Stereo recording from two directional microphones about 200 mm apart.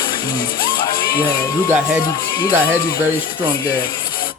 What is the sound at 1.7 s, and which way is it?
Speech, 5° right (ahead or behind).